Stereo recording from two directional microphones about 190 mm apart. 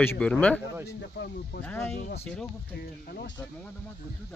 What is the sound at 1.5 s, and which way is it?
Speech, 65° left (ahead or behind).